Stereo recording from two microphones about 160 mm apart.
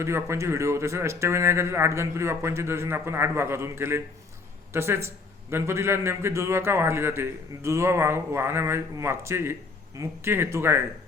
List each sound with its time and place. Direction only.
0.0 s a man's voice: 15° right (ahead or behind)